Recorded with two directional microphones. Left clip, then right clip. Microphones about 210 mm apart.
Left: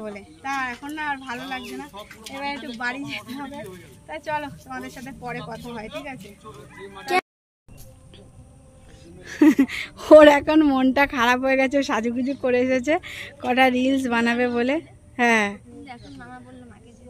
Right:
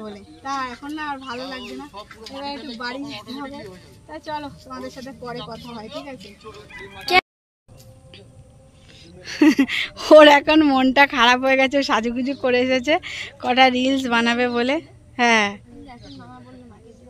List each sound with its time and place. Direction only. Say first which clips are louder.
0.5 s a woman's voice: even; 10° left (ahead or behind)
1.4 s speech: even; 50° left (ahead or behind)
4.1 s a woman's voice: left 2 dB; 5° left (ahead or behind)
6.1 s speech: right 3 dB; 55° left (ahead or behind)
7.1 s a sound: right 5 dB; 5° left (ahead or behind)
9.2 s a woman's voice: right 1 dB; 10° left (ahead or behind)